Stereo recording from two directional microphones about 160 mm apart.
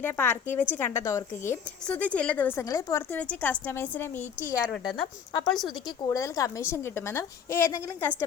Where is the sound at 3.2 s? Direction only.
10° left (ahead or behind).